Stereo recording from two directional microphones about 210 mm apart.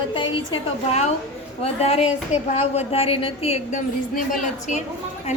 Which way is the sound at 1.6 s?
30° left (ahead or behind).